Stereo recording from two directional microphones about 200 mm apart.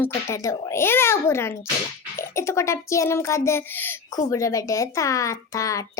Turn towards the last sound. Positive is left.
turn(degrees=15)  # may be behind; listen again after turning